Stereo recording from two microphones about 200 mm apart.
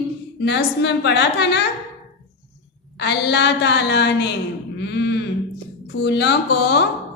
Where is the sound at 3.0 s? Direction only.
55° left (ahead or behind).